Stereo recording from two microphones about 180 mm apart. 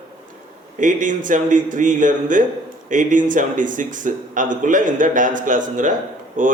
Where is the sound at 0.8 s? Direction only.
45° right (ahead or behind).